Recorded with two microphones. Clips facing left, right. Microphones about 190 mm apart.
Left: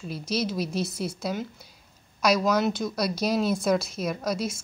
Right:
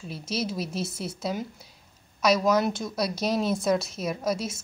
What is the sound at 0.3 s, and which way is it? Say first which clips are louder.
A woman's voice: left 2 dB; 5° right (ahead or behind).